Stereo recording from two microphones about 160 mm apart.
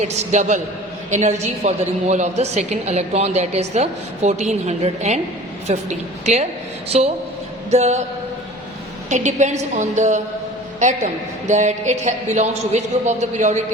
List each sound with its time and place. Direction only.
0.0 s a woman's voice: 45° right (ahead or behind)
9.0 s a woman's voice: 50° right (ahead or behind)